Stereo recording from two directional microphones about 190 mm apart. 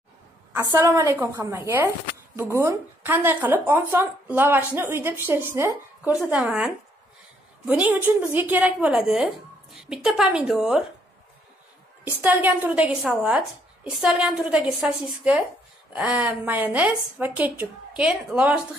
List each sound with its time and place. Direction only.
0.5 s a woman's voice: 15° right (ahead or behind)
12.0 s a woman's voice: 10° right (ahead or behind)